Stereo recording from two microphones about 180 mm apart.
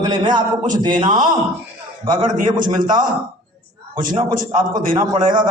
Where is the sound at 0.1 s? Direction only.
25° right (ahead or behind).